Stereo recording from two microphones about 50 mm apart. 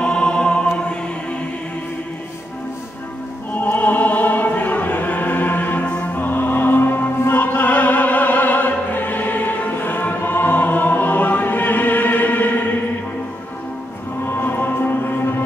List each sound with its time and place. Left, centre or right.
0.0 s music: centre
3.5 s opera: left
6.1 s music: left
14.3 s music: left